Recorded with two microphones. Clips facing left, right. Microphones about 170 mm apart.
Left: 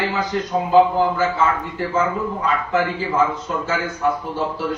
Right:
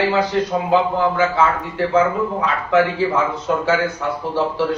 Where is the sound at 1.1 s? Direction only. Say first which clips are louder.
Right 2 dB; 75° right (ahead or behind).